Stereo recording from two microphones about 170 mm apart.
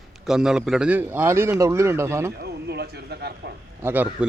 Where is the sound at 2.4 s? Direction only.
75° right (ahead or behind).